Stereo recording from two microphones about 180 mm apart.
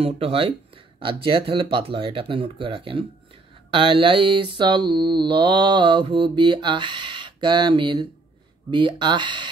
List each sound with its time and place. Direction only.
0.0 s speech: 30° right (ahead or behind)
0.9 s mantra: 30° right (ahead or behind)